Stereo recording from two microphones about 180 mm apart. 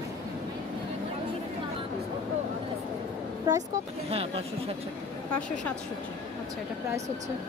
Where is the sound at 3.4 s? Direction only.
20° right (ahead or behind).